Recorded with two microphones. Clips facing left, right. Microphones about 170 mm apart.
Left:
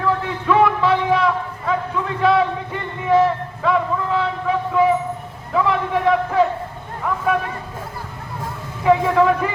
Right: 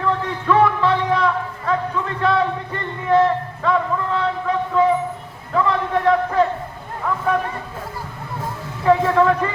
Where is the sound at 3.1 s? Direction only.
5° left (ahead or behind).